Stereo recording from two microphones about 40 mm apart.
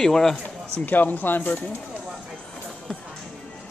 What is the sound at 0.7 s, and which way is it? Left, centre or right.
Speech, left.